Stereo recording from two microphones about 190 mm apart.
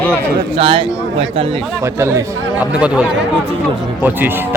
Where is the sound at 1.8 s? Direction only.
15° right (ahead or behind).